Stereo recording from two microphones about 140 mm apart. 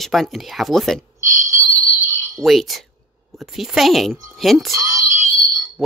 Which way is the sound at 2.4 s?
Centre (ahead or behind).